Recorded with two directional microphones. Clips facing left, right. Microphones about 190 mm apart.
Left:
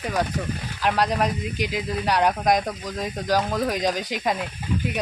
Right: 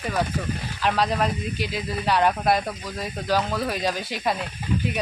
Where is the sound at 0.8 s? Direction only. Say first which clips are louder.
Left 1 dB; 10° left (ahead or behind).